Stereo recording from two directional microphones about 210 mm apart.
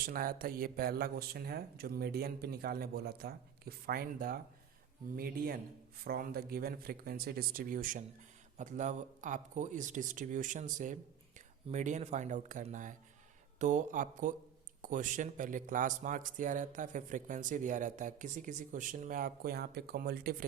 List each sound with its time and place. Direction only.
0.0 s speech: 45° right (ahead or behind)